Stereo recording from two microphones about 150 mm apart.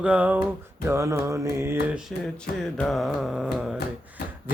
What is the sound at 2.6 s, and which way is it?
Music, 5° left (ahead or behind).